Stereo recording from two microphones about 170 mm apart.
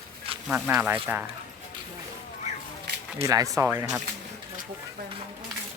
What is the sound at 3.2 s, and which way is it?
Speech, 20° right (ahead or behind).